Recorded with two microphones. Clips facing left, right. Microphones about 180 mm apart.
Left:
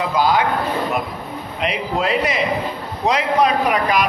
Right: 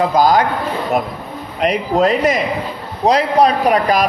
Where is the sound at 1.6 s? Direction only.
45° right (ahead or behind).